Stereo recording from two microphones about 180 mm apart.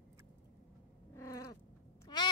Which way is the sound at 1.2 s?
15° left (ahead or behind).